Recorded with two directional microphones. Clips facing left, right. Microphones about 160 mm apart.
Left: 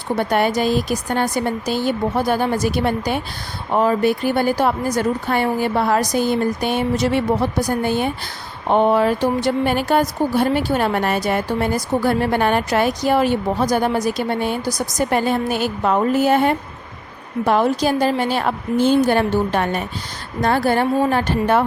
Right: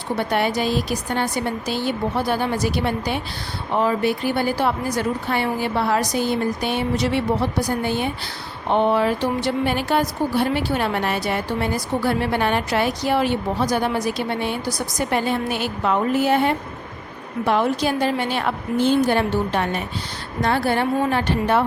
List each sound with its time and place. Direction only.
0.2 s a woman's voice: 45° left (ahead or behind)